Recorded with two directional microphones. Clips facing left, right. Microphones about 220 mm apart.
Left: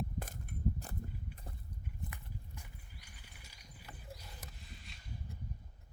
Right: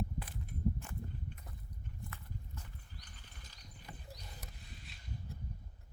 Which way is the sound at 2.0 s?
15° left (ahead or behind).